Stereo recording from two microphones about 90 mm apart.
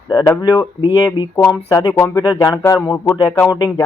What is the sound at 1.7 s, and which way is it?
Speech, 35° left (ahead or behind).